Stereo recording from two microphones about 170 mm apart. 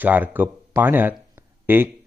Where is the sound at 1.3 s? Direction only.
10° right (ahead or behind).